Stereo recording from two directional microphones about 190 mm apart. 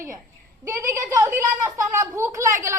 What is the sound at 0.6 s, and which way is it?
A woman's voice, 15° right (ahead or behind).